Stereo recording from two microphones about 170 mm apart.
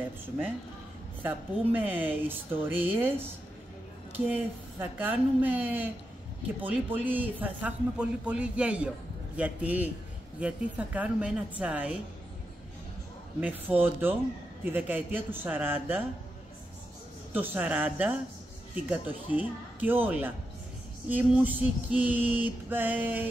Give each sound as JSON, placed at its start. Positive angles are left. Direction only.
{"t": 1.2, "sound": "speech", "side_deg": -10}
{"t": 4.3, "sound": "speech", "side_deg": -10}
{"t": 13.4, "sound": "speech", "side_deg": -10}
{"t": 17.3, "sound": "speech", "side_deg": -10}